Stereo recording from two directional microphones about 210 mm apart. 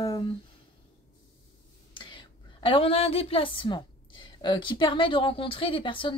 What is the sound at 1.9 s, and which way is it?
A woman's voice, 20° left (ahead or behind).